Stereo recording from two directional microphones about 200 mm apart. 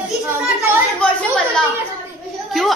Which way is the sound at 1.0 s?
5° left (ahead or behind).